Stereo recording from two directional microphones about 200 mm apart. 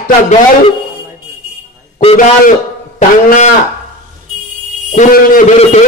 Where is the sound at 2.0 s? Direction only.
35° left (ahead or behind).